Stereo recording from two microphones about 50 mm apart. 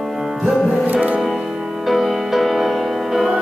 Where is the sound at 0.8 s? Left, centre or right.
Right.